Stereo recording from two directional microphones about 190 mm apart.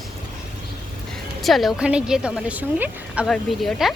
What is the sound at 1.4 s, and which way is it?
Speech, centre (ahead or behind).